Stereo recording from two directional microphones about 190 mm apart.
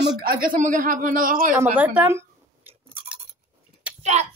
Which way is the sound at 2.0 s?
10° right (ahead or behind).